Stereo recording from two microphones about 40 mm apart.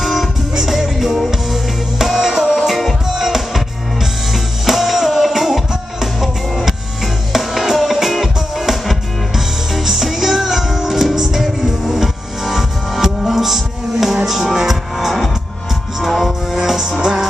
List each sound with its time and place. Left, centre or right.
0.0 s music: centre